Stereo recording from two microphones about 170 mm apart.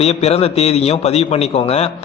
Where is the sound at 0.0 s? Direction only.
40° left (ahead or behind).